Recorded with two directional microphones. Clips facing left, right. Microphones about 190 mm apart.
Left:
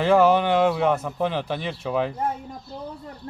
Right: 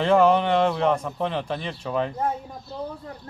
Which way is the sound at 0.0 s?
5° left (ahead or behind).